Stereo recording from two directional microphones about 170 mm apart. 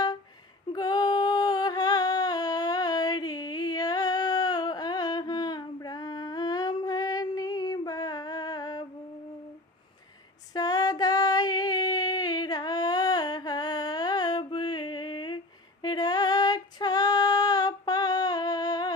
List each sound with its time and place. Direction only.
0.7 s female singing: 25° left (ahead or behind)
10.5 s female singing: 20° left (ahead or behind)